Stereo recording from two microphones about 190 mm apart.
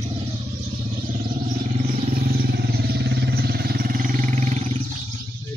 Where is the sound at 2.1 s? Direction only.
55° right (ahead or behind).